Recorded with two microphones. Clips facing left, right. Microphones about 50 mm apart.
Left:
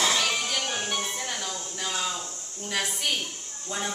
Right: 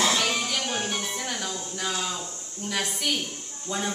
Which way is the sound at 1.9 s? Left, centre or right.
Centre.